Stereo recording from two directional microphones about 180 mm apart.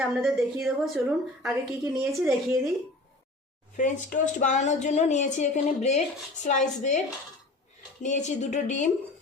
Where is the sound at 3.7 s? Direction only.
45° left (ahead or behind).